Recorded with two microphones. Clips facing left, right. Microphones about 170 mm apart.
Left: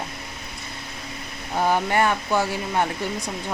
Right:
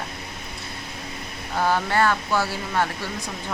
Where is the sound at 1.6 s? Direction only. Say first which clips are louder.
Left 1 dB; 15° left (ahead or behind).